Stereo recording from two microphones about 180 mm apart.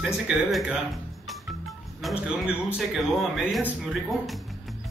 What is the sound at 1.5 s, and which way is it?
Music, centre (ahead or behind).